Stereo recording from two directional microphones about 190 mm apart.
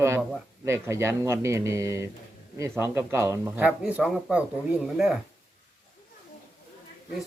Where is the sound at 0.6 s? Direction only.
15° right (ahead or behind).